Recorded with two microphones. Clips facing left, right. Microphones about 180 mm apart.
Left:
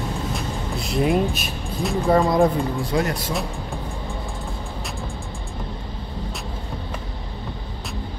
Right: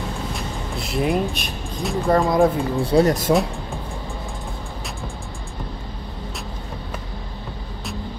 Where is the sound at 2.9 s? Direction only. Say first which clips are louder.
Right 8 dB; 35° right (ahead or behind).